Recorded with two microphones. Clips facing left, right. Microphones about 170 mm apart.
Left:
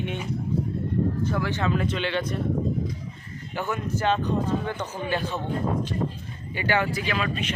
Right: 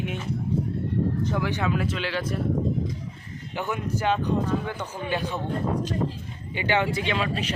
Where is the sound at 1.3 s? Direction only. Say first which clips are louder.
Even; 15° right (ahead or behind).